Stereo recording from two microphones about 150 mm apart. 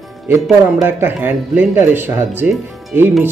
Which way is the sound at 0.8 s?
15° right (ahead or behind).